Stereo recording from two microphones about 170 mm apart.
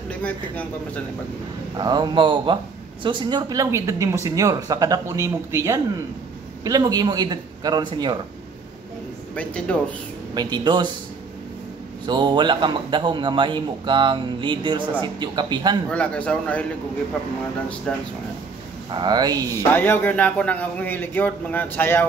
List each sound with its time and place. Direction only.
0.1 s a man's voice: 10° left (ahead or behind)
1.8 s a man's voice: 25° right (ahead or behind)
9.3 s a man's voice: 5° left (ahead or behind)
10.3 s a man's voice: 25° right (ahead or behind)
12.1 s a man's voice: 25° right (ahead or behind)
15.9 s a man's voice: 5° left (ahead or behind)
18.9 s a man's voice: 25° right (ahead or behind)
19.7 s a man's voice: 10° left (ahead or behind)